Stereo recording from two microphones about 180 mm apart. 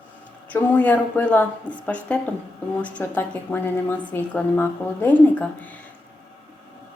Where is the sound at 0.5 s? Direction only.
10° left (ahead or behind).